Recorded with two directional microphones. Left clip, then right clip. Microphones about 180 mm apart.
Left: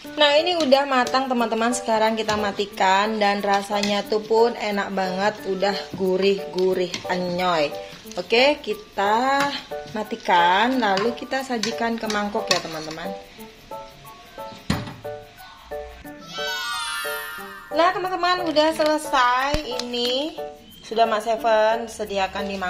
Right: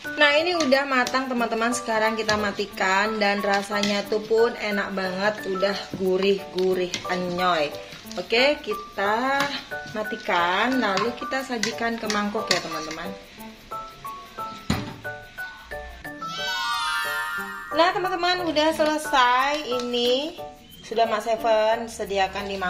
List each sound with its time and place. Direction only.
0.2 s a woman's voice: 10° left (ahead or behind)
16.3 s music: centre (ahead or behind)
20.9 s a woman's voice: 10° left (ahead or behind)